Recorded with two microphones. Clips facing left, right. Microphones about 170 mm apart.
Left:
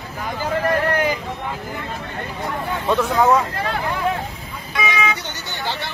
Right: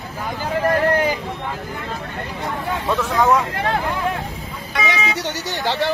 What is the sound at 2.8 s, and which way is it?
Speech, 15° left (ahead or behind).